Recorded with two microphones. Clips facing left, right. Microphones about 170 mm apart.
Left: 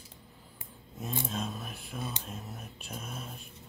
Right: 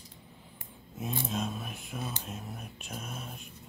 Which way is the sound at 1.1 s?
Centre (ahead or behind).